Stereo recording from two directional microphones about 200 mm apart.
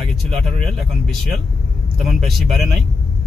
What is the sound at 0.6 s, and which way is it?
Speech, centre (ahead or behind).